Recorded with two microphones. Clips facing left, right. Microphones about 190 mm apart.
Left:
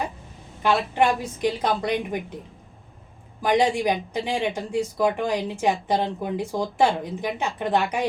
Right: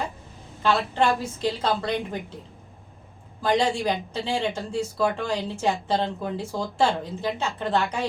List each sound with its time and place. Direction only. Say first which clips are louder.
0.6 s speech: left 1 dB; 15° left (ahead or behind)
3.4 s speech: left 2 dB; 15° left (ahead or behind)